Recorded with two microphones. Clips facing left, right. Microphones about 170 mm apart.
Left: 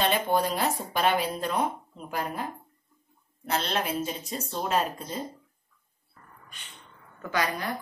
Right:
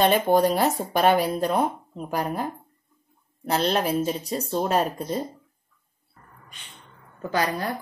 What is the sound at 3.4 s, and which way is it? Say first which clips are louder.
A woman's voice: right 6 dB; 35° right (ahead or behind).